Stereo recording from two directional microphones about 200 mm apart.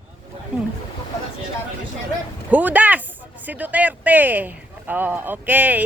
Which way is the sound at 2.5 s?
10° right (ahead or behind).